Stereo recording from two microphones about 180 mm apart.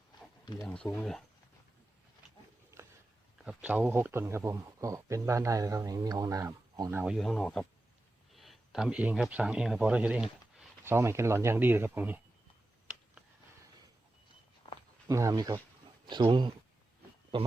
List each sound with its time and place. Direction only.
0.6 s speech: 5° left (ahead or behind)
3.4 s speech: 10° right (ahead or behind)
7.0 s speech: centre (ahead or behind)
14.6 s walk: 25° left (ahead or behind)
15.0 s speech: 15° right (ahead or behind)